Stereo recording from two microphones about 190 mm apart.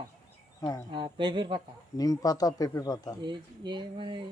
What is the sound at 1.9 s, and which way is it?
Speech, 20° left (ahead or behind).